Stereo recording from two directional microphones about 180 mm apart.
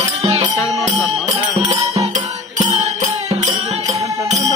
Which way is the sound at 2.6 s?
40° right (ahead or behind).